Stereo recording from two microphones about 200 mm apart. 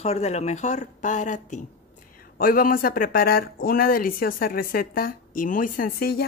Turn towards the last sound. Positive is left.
turn(degrees=50)  # may be behind; listen again after turning